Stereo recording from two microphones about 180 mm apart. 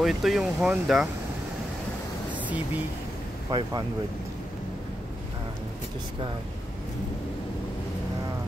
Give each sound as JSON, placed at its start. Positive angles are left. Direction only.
{"t": 0.0, "sound": "speech", "side_deg": 0}
{"t": 2.3, "sound": "a sound", "side_deg": -10}
{"t": 3.4, "sound": "speech", "side_deg": -20}